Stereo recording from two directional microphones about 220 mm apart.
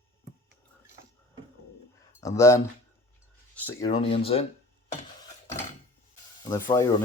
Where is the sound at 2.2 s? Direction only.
15° left (ahead or behind).